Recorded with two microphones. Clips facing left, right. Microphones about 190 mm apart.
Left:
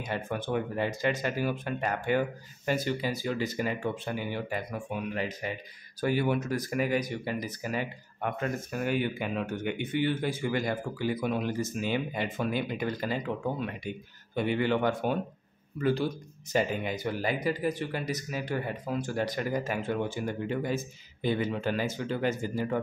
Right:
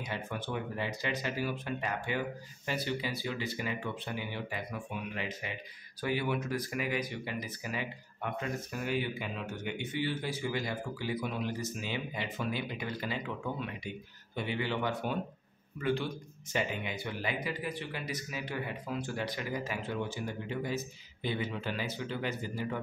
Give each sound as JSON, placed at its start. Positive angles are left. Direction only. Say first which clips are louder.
{"t": 0.0, "sound": "speech", "louder": "left 5 dB", "side_deg": 50}
{"t": 15.8, "sound": "a man's voice", "louder": "left 5 dB", "side_deg": 40}